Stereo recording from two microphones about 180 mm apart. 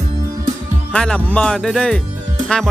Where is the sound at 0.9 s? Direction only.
5° left (ahead or behind).